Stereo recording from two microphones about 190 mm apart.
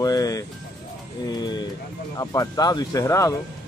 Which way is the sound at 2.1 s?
20° left (ahead or behind).